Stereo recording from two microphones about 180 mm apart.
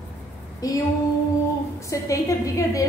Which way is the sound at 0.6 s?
20° left (ahead or behind).